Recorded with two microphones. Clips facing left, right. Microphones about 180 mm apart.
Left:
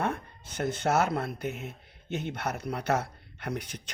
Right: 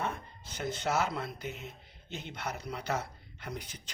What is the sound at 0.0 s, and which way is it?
Speech, 60° left (ahead or behind).